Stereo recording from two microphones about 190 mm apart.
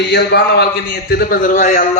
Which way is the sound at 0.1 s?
60° left (ahead or behind).